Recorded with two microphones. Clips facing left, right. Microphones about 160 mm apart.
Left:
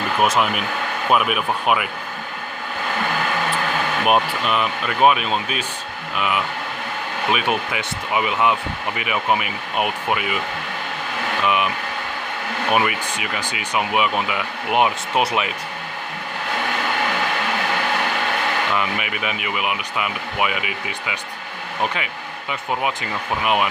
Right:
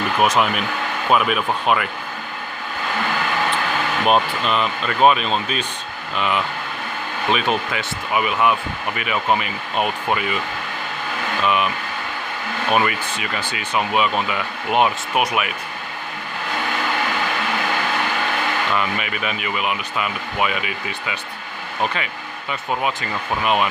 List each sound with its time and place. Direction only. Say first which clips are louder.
0.2 s speech: right 1 dB; centre (ahead or behind)
4.0 s speech: right 1 dB; 10° left (ahead or behind)
11.4 s speech: right 1 dB; 15° left (ahead or behind)
12.7 s speech: right 1 dB; 15° left (ahead or behind)
18.7 s speech: right 1 dB; 15° left (ahead or behind)
22.8 s speech: right 1 dB; 15° left (ahead or behind)